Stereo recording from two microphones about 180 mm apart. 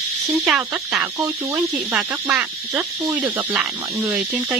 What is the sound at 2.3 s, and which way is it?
Speech, 5° right (ahead or behind).